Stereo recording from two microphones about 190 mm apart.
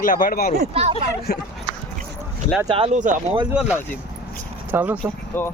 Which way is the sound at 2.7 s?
30° right (ahead or behind).